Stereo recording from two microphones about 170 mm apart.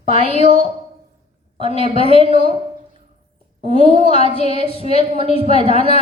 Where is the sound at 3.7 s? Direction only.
35° right (ahead or behind).